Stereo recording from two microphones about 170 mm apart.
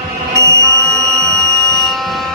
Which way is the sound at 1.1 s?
20° right (ahead or behind).